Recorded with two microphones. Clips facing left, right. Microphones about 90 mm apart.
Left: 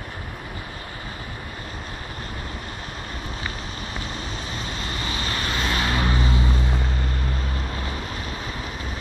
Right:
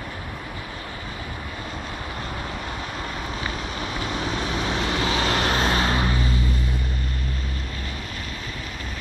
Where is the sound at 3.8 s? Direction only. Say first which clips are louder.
Right 6 dB; 70° right (ahead or behind).